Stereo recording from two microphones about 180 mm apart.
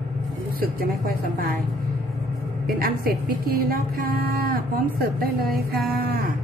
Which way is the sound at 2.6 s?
55° right (ahead or behind).